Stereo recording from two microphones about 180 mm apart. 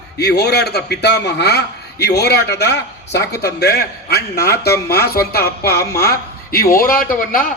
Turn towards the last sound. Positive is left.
turn(degrees=50)  # may be behind; listen again after turning